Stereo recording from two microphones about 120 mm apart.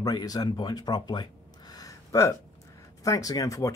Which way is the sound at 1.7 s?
30° left (ahead or behind).